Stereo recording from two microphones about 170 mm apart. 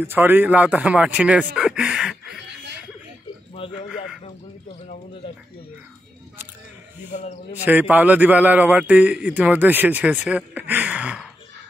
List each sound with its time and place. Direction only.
0.0 s a man's voice: 10° right (ahead or behind)
2.4 s chuckle: 90° right
3.6 s a sound: 30° left (ahead or behind)
7.1 s a man's voice: 45° left (ahead or behind)
7.9 s a man's voice: 10° right (ahead or behind)